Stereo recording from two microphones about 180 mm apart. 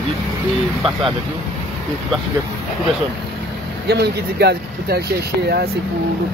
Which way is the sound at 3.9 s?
65° right (ahead or behind).